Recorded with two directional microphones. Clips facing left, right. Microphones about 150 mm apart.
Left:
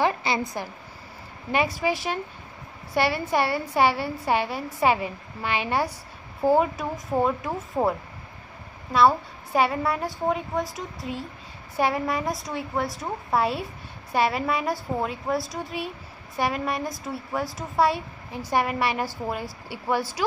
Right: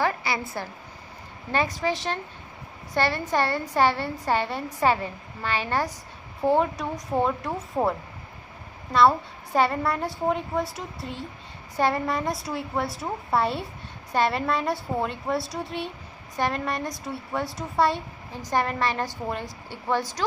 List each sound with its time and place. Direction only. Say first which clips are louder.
0.0 s a woman's voice: left 2 dB; 20° left (ahead or behind); by 7.5 s centre (ahead or behind)
8.9 s a woman's voice: even; 5° left (ahead or behind)